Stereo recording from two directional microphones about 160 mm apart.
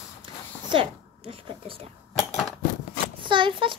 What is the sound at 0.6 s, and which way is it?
Speech, 30° right (ahead or behind).